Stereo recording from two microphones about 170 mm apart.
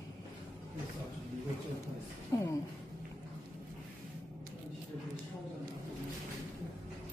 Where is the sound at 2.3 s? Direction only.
20° left (ahead or behind).